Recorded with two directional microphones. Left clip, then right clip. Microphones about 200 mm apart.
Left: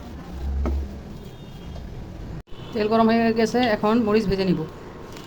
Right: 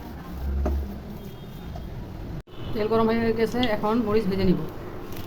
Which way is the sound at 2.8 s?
15° left (ahead or behind).